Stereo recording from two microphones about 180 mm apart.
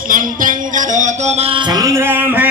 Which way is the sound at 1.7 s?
20° right (ahead or behind).